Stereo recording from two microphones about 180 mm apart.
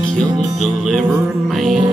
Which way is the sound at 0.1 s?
Centre (ahead or behind).